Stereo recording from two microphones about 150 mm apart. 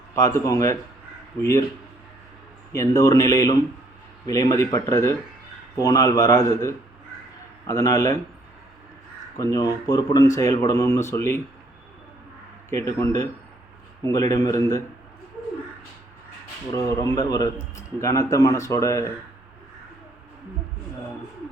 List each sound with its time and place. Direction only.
0.1 s speech: 20° left (ahead or behind)
2.7 s speech: 20° left (ahead or behind)
9.4 s speech: 20° left (ahead or behind)
12.7 s speech: 20° left (ahead or behind)
16.7 s speech: 20° left (ahead or behind)